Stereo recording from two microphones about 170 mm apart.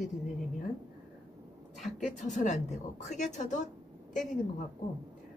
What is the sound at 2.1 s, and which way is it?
A woman's voice, 45° left (ahead or behind).